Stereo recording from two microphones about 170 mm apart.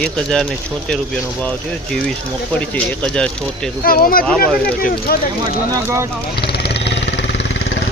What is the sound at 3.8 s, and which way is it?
Speech, 55° left (ahead or behind).